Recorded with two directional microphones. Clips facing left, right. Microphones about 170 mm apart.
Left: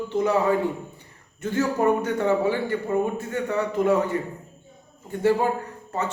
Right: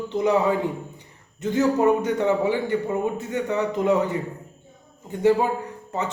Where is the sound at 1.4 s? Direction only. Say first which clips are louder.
Right 3 dB; 20° right (ahead or behind).